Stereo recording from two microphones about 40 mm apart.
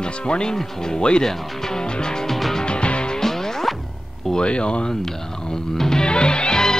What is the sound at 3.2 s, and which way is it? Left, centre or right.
Music, centre.